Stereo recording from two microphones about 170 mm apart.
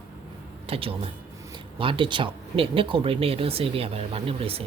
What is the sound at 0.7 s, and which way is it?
Speech, 35° right (ahead or behind).